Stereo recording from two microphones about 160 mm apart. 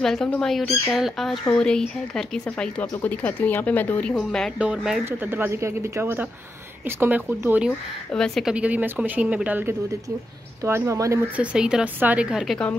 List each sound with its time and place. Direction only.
0.0 s speech: 5° left (ahead or behind)
8.1 s speech: 5° left (ahead or behind); by 11.2 s 20° right (ahead or behind)
11.3 s speech: 5° right (ahead or behind)